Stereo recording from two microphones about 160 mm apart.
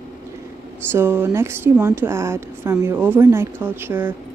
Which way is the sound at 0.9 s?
15° right (ahead or behind).